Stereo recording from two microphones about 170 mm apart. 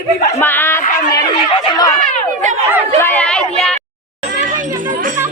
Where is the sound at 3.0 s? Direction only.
10° left (ahead or behind).